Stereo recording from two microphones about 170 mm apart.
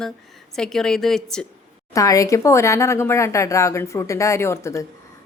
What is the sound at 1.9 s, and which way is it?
Speech, 20° left (ahead or behind).